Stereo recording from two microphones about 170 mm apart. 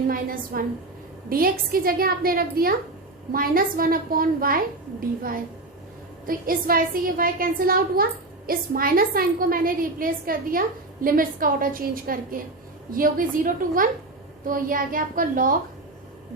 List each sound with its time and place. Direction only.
0.1 s a woman's voice: 55° right (ahead or behind)